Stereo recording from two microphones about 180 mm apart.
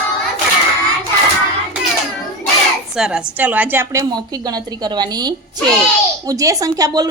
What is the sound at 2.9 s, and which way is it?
A woman's voice, 5° right (ahead or behind).